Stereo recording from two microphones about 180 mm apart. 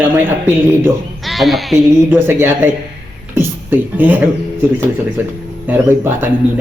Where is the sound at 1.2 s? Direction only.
Centre (ahead or behind).